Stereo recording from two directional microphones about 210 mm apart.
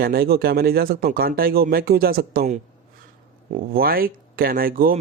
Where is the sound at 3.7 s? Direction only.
45° right (ahead or behind).